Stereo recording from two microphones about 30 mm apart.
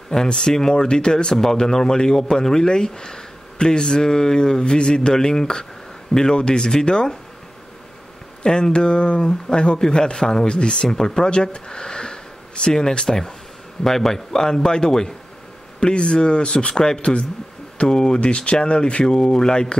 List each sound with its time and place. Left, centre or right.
0.1 s speech: centre
1.3 s speech: centre
8.7 s a man's voice: left
17.0 s speech: left
17.8 s speech: left
18.2 s speech: left